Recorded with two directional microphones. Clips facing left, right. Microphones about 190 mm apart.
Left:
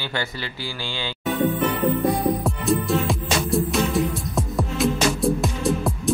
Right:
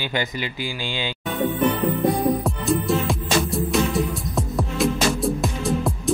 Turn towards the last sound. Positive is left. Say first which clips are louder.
# even
turn(degrees=0)  # may be behind; listen again after turning